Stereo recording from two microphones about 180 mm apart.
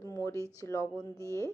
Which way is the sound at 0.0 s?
15° left (ahead or behind).